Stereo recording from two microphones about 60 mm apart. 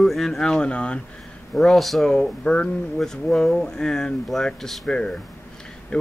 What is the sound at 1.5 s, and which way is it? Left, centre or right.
Speech, centre.